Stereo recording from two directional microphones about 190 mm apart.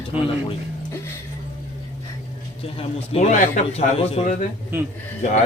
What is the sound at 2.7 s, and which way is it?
A man's voice, 35° left (ahead or behind).